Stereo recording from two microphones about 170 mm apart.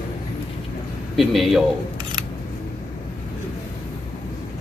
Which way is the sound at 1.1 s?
Centre (ahead or behind).